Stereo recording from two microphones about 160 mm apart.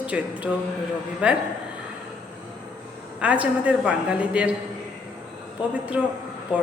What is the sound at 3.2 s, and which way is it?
A woman's voice, 5° right (ahead or behind).